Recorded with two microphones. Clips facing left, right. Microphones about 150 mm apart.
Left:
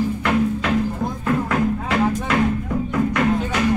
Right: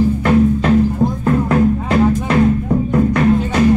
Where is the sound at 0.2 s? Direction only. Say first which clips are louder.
Right 7 dB; 35° right (ahead or behind).